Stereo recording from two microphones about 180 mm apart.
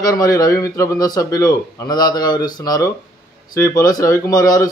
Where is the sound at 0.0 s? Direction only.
20° left (ahead or behind).